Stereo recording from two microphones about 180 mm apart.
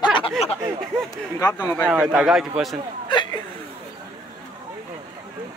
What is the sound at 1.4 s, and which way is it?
Speech, 20° left (ahead or behind).